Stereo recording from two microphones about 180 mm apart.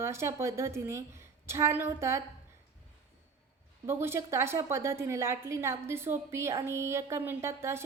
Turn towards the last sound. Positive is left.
turn(degrees=-15)  # may be behind; listen again after turning